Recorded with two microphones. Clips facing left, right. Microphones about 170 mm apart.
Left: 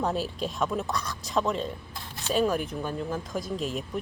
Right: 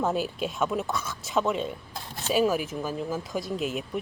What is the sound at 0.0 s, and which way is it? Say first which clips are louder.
Speech: right 2 dB; centre (ahead or behind).